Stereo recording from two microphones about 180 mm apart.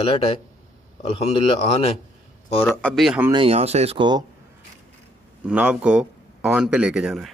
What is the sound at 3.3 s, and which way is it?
Speech, 30° right (ahead or behind).